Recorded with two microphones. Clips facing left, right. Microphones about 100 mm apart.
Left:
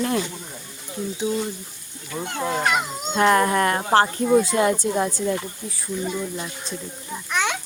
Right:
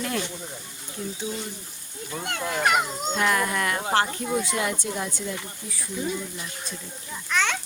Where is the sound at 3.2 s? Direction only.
45° left (ahead or behind).